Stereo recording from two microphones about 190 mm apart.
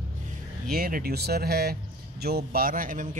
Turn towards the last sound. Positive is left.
turn(degrees=-45)  # may be behind; listen again after turning